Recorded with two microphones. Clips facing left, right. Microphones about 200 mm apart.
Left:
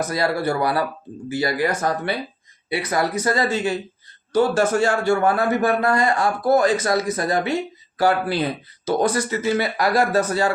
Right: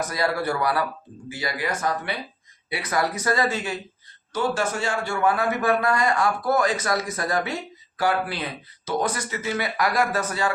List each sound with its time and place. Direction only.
0.1 s a man's voice: 35° left (ahead or behind)
4.3 s a man's voice: 40° left (ahead or behind)